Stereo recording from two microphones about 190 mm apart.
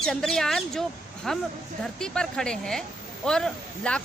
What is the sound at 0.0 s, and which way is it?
Speech, 5° left (ahead or behind).